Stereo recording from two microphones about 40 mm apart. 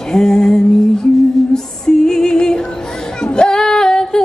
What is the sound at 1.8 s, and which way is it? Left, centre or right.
Music, centre.